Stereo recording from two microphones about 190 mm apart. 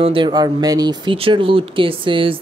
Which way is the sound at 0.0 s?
25° right (ahead or behind).